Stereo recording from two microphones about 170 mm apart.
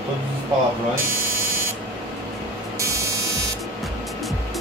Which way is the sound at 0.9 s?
15° right (ahead or behind).